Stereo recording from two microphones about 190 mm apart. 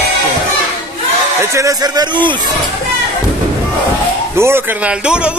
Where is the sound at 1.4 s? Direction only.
15° right (ahead or behind).